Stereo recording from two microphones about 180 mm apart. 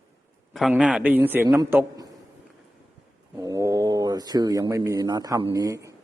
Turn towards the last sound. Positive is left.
turn(degrees=-20)  # may be behind; listen again after turning